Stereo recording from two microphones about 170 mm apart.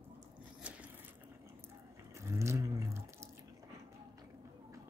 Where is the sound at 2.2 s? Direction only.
15° right (ahead or behind).